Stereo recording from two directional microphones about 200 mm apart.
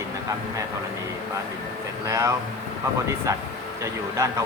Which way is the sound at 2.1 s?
15° right (ahead or behind).